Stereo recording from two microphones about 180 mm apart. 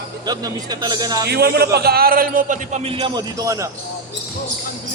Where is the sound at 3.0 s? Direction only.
20° right (ahead or behind).